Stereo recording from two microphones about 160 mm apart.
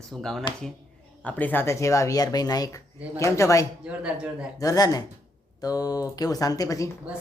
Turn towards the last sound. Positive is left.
turn(degrees=20)  # may be behind; listen again after turning